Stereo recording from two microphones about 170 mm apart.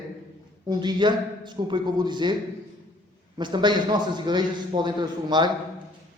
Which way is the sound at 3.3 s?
25° right (ahead or behind).